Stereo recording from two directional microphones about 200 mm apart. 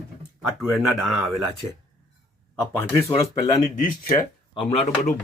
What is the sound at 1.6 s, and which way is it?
Speech, 30° right (ahead or behind).